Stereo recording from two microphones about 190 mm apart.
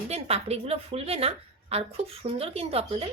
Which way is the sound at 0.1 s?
30° right (ahead or behind).